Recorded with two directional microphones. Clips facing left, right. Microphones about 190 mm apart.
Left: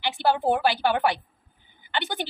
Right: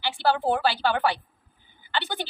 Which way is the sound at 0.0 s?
20° left (ahead or behind).